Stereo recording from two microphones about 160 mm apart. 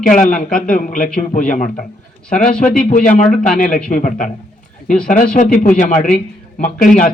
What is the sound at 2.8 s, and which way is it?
Speech, 55° left (ahead or behind).